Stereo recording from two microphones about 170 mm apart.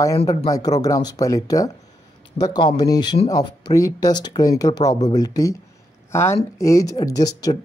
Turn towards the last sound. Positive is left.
turn(degrees=20)  # may be behind; listen again after turning